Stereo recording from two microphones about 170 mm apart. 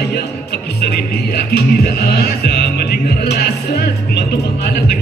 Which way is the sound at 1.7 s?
65° left (ahead or behind).